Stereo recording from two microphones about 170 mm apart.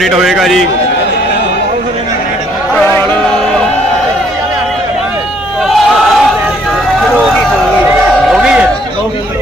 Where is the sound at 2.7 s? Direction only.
10° left (ahead or behind).